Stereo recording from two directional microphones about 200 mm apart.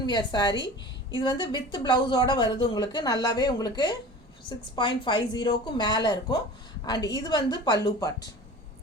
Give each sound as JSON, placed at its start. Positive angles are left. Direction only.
{"t": 0.0, "sound": "speech", "side_deg": 20}